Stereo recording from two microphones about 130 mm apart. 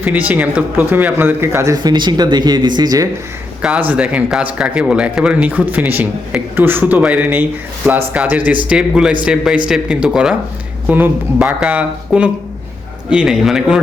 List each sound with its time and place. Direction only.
0.0 s speech: 10° right (ahead or behind); by 3.1 s 30° right (ahead or behind)
3.6 s a man's voice: 10° right (ahead or behind)